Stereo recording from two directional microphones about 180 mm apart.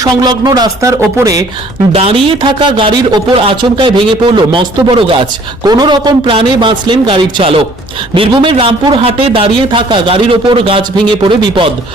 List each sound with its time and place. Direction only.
0.0 s a man's voice: 20° right (ahead or behind)
1.9 s a woman's voice: 30° right (ahead or behind)